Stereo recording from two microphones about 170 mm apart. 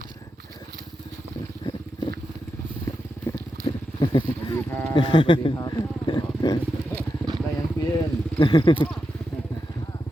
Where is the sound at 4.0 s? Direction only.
25° left (ahead or behind).